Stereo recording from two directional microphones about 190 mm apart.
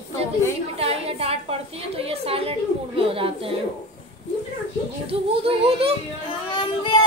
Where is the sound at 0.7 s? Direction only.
30° right (ahead or behind).